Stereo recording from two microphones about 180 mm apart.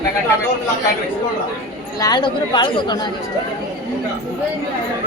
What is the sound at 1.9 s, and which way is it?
Speech, 20° left (ahead or behind).